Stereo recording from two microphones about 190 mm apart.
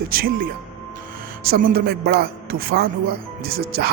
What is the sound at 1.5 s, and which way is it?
Speech, 55° right (ahead or behind).